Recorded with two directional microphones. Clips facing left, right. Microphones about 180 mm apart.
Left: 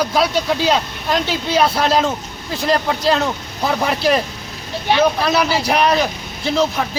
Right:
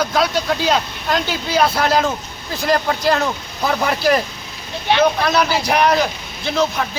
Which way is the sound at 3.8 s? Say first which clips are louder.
Even; 25° left (ahead or behind).